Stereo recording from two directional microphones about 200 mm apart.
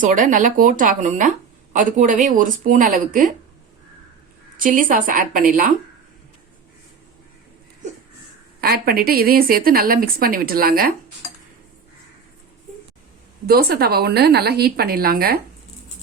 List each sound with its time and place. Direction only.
0.0 s speech: 40° right (ahead or behind)
4.5 s a woman's voice: 45° right (ahead or behind)
8.6 s a woman's voice: 50° right (ahead or behind)
13.5 s a woman's voice: 55° right (ahead or behind)